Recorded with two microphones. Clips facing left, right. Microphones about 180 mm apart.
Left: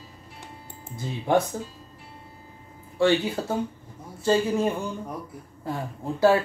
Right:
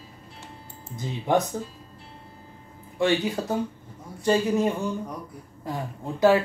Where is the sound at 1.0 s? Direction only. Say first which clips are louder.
Left 1 dB; 20° right (ahead or behind).